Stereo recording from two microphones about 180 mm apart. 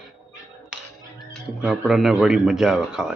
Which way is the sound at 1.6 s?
Centre (ahead or behind).